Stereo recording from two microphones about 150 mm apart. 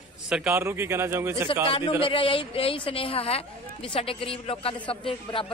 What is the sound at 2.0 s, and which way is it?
A man's voice, 35° left (ahead or behind).